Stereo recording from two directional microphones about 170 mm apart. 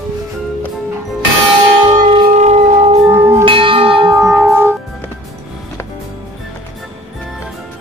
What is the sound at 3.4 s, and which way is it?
Church bell, 30° right (ahead or behind).